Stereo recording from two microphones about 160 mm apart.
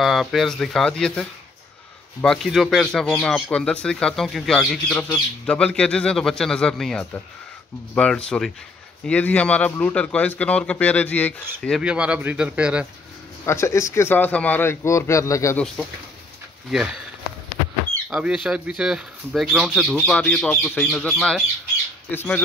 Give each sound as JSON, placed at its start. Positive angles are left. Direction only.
{"t": 0.0, "sound": "speech", "side_deg": 0}
{"t": 2.2, "sound": "a man's voice", "side_deg": 0}
{"t": 11.8, "sound": "speech", "side_deg": -5}
{"t": 13.5, "sound": "a man's voice", "side_deg": 15}
{"t": 15.5, "sound": "a man's voice", "side_deg": 10}
{"t": 16.7, "sound": "speech", "side_deg": -5}
{"t": 18.1, "sound": "a man's voice", "side_deg": -5}
{"t": 22.1, "sound": "a man's voice", "side_deg": 15}